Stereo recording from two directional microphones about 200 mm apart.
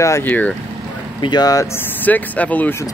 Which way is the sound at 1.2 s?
20° left (ahead or behind).